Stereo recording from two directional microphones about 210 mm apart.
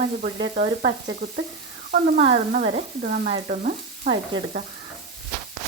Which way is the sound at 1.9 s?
30° right (ahead or behind).